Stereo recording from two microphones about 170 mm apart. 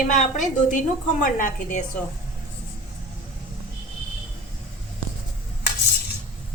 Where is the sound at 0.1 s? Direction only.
45° left (ahead or behind).